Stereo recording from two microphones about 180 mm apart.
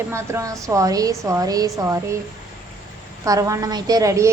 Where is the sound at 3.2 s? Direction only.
20° right (ahead or behind).